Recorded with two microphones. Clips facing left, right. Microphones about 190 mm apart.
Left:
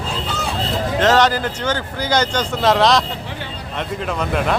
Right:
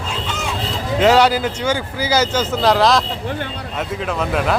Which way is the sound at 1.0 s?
10° right (ahead or behind).